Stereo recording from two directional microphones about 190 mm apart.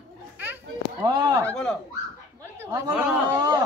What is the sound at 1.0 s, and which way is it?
Speech, 20° right (ahead or behind).